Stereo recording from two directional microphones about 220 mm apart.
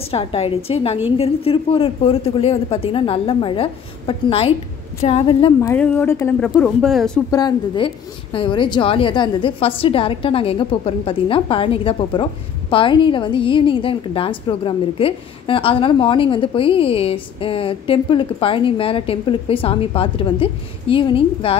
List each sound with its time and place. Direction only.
0.1 s a woman's voice: 25° left (ahead or behind)
6.6 s speech: centre (ahead or behind)
7.2 s a woman's voice: 20° left (ahead or behind)